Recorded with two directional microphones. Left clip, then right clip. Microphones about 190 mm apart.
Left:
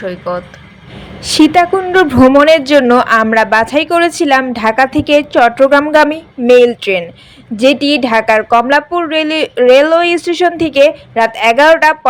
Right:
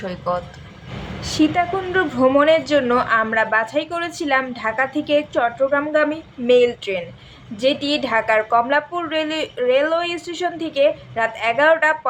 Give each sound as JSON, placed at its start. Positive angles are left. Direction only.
{"t": 0.0, "sound": "speech", "side_deg": 10}
{"t": 1.2, "sound": "a woman's voice", "side_deg": 50}